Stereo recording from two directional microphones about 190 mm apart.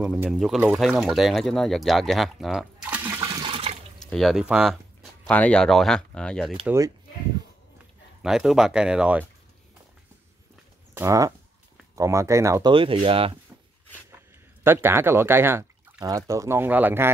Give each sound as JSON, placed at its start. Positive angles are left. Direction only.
{"t": 0.0, "sound": "speech", "side_deg": -5}
{"t": 4.1, "sound": "speech", "side_deg": 0}
{"t": 6.6, "sound": "speech", "side_deg": -15}
{"t": 8.2, "sound": "speech", "side_deg": 0}
{"t": 11.0, "sound": "speech", "side_deg": -15}
{"t": 12.7, "sound": "speech", "side_deg": -25}
{"t": 14.6, "sound": "speech", "side_deg": -10}